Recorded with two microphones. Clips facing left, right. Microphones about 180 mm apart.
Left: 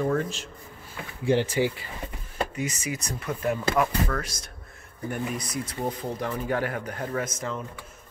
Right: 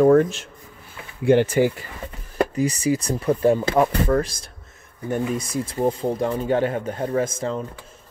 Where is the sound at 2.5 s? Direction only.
35° right (ahead or behind).